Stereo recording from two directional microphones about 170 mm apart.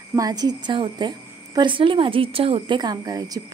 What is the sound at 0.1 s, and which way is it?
Speech, 20° right (ahead or behind).